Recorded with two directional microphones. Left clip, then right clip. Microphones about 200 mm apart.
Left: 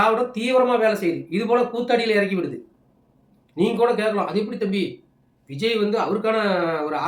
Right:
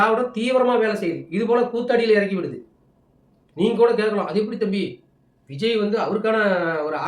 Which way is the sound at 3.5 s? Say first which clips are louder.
Right 2 dB; 5° right (ahead or behind).